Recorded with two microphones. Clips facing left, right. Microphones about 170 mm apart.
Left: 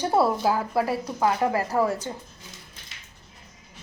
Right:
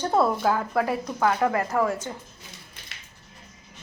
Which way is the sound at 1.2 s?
30° left (ahead or behind).